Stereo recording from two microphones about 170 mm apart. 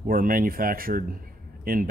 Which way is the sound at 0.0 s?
55° right (ahead or behind).